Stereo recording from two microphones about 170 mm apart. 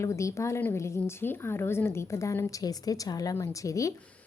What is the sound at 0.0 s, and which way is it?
A woman's voice, 15° left (ahead or behind).